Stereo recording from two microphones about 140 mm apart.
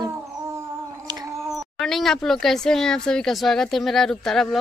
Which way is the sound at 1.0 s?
25° right (ahead or behind).